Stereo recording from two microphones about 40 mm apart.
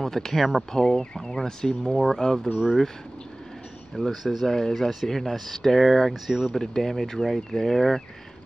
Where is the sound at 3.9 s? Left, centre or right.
Centre.